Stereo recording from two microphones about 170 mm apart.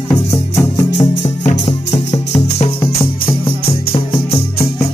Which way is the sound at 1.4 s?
40° left (ahead or behind).